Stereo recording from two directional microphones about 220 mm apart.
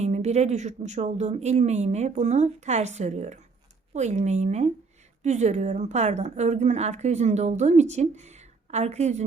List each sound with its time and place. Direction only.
0.0 s a woman's voice: 30° right (ahead or behind)